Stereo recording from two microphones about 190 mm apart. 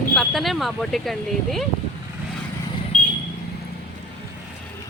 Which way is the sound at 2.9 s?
40° left (ahead or behind).